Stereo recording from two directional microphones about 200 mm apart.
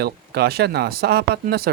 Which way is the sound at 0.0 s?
50° right (ahead or behind).